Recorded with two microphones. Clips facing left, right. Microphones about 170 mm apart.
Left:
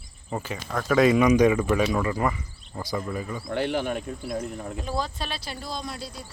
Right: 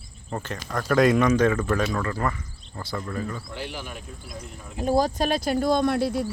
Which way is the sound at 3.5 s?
60° left (ahead or behind).